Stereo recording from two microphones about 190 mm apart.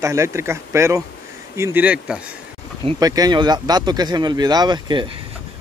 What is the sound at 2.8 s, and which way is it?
Speech, 20° right (ahead or behind).